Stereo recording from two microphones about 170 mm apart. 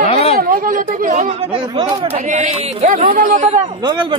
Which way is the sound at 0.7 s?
50° right (ahead or behind).